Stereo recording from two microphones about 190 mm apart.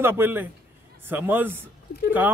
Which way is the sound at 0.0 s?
10° right (ahead or behind).